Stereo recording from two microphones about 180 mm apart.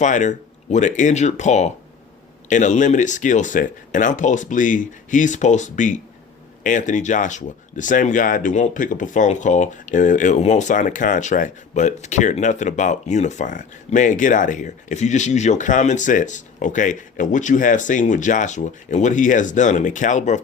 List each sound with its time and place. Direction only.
0.0 s speech: 45° left (ahead or behind)